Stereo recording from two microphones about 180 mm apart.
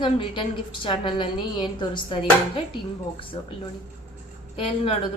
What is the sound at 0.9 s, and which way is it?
A woman's voice, 25° left (ahead or behind).